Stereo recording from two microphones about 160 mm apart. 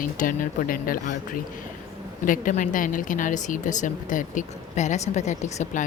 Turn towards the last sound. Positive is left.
turn(degrees=45)  # may be behind; listen again after turning